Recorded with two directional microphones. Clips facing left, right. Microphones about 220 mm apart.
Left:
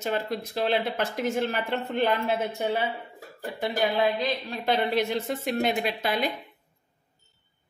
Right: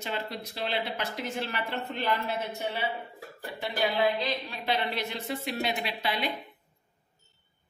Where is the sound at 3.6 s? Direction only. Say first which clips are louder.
Left 3 dB; 45° left (ahead or behind).